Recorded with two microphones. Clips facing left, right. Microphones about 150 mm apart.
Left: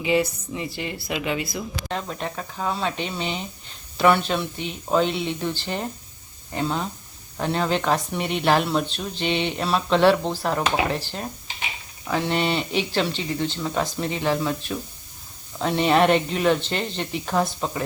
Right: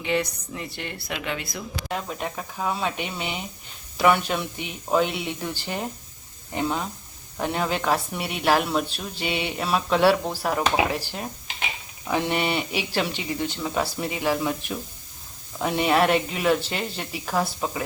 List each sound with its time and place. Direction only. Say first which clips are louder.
0.0 s speech: left 4 dB; 5° left (ahead or behind)
1.9 s speech: right 1 dB; 10° right (ahead or behind)